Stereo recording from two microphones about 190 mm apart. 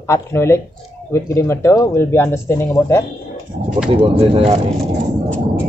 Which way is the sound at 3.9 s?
30° right (ahead or behind).